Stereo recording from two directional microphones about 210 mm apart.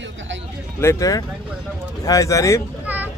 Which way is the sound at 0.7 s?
15° left (ahead or behind).